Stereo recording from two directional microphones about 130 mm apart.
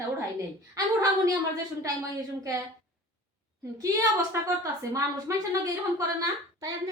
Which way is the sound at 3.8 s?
25° right (ahead or behind).